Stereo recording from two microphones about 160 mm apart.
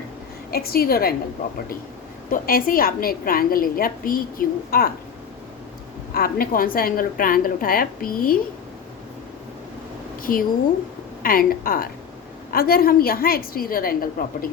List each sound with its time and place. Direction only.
0.5 s a woman's voice: 70° left (ahead or behind)
2.3 s a woman's voice: 65° left (ahead or behind)
6.1 s a woman's voice: 65° left (ahead or behind)
10.3 s a woman's voice: 60° left (ahead or behind)